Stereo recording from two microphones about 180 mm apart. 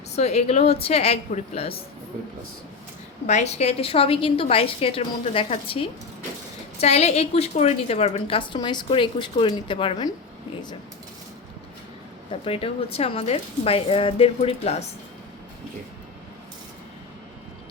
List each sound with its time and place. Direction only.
0.2 s a woman's voice: 35° left (ahead or behind)
3.2 s a woman's voice: 40° left (ahead or behind)
12.3 s a woman's voice: 30° left (ahead or behind)